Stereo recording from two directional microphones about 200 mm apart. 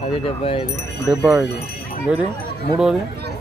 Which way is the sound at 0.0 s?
30° left (ahead or behind).